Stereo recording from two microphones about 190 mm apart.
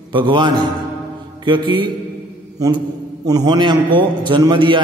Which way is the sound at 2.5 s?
20° right (ahead or behind).